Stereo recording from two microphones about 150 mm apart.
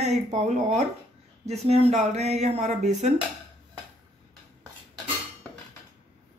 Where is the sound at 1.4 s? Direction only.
45° right (ahead or behind).